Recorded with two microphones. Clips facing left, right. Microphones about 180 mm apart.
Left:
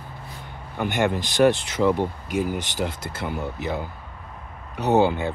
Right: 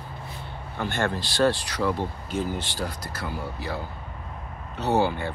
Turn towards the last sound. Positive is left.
turn(degrees=20)  # may be behind; listen again after turning